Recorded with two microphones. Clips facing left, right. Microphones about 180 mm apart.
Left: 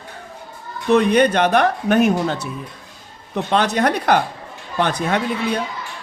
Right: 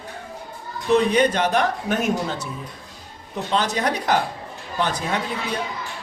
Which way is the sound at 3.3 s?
65° left (ahead or behind).